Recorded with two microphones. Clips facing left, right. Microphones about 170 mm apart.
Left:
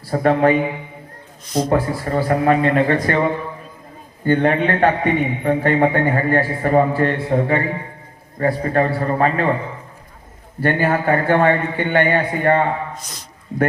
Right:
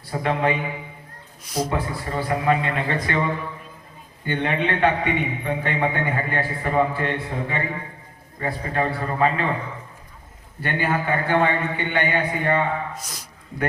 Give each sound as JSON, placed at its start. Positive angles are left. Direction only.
{"t": 0.1, "sound": "a man's voice", "side_deg": 45}
{"t": 1.5, "sound": "a man's voice", "side_deg": -10}
{"t": 1.7, "sound": "a man's voice", "side_deg": 45}
{"t": 4.3, "sound": "a man's voice", "side_deg": 45}
{"t": 10.6, "sound": "a man's voice", "side_deg": 50}